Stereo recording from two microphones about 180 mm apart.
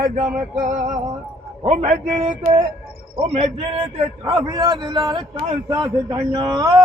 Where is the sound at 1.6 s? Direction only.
40° right (ahead or behind).